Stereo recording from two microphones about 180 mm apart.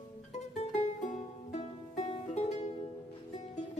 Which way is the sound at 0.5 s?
40° left (ahead or behind).